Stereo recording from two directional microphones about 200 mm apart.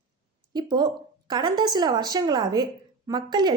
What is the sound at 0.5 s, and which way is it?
A woman's voice, 20° right (ahead or behind).